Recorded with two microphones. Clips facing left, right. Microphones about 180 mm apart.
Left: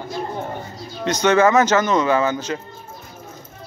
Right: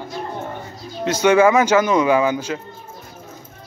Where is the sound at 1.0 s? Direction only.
10° right (ahead or behind).